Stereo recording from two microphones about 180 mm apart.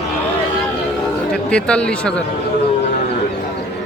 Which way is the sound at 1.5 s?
5° left (ahead or behind).